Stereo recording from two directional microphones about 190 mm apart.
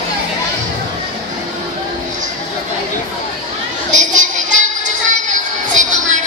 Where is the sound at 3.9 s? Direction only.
40° right (ahead or behind).